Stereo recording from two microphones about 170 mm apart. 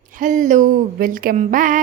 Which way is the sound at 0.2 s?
50° right (ahead or behind).